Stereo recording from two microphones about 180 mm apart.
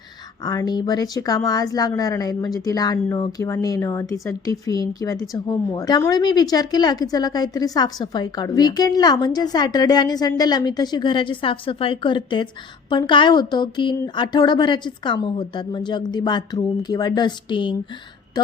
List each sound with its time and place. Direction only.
0.4 s a woman's voice: 20° left (ahead or behind)